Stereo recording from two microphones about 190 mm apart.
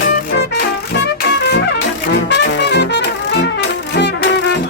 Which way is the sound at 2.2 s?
65° left (ahead or behind).